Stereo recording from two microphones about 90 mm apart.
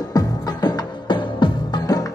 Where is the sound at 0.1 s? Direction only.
50° left (ahead or behind).